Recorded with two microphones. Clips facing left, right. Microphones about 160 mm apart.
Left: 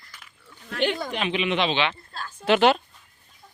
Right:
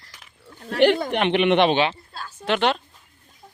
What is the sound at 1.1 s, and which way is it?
Speech, 65° right (ahead or behind).